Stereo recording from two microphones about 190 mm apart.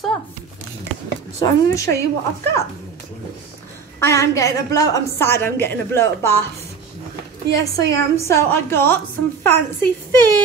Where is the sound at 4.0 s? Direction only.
15° left (ahead or behind).